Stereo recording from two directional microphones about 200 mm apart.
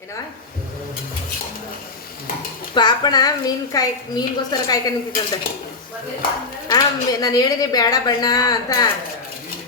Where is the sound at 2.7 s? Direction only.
20° left (ahead or behind).